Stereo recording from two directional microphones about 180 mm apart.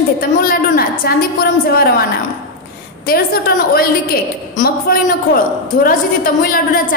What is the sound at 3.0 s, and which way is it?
A woman's voice, 60° left (ahead or behind).